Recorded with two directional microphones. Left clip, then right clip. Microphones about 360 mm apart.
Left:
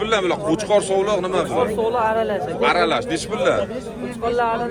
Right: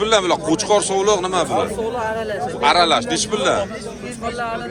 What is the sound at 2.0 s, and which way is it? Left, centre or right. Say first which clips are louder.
Speech: left 4 dB; centre.